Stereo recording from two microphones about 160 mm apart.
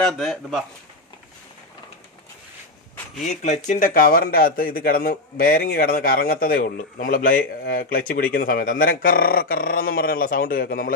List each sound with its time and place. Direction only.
0.0 s speech: centre (ahead or behind)
3.3 s speech: 45° left (ahead or behind); by 10.9 s 65° left (ahead or behind)